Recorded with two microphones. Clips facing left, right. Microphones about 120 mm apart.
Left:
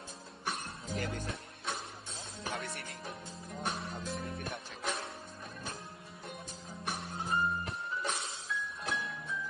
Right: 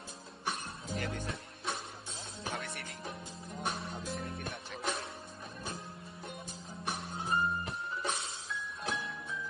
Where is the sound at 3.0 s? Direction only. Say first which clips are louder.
Right 1 dB; centre (ahead or behind).